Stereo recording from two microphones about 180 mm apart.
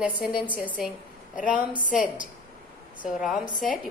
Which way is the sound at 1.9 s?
45° left (ahead or behind).